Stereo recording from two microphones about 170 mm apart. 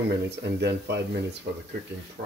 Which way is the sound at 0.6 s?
80° right.